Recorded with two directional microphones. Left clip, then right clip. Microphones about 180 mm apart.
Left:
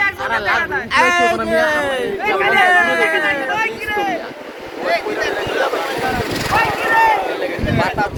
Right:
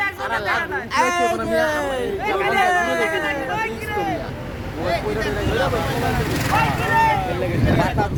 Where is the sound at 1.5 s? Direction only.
Centre (ahead or behind).